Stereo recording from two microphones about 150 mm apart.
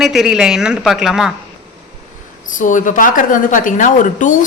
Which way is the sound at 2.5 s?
60° left (ahead or behind).